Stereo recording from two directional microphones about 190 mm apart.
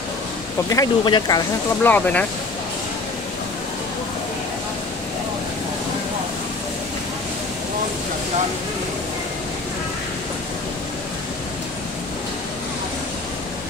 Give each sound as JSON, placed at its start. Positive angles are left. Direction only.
{"t": 0.7, "sound": "speech", "side_deg": 20}
{"t": 1.8, "sound": "speech", "side_deg": 10}